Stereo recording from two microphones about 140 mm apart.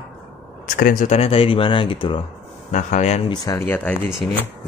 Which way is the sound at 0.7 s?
80° left.